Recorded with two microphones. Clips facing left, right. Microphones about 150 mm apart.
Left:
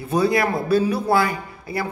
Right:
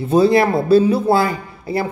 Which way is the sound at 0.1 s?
30° right (ahead or behind).